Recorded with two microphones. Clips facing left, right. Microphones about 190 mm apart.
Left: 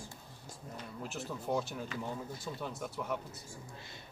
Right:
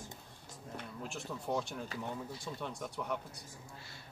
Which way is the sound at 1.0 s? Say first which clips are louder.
Left 3 dB; centre (ahead or behind).